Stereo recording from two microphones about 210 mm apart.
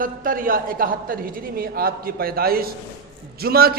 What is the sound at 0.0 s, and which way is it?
A man's voice, 40° right (ahead or behind).